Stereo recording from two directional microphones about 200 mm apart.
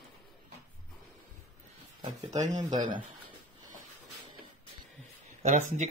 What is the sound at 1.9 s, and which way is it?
Speech, 20° right (ahead or behind).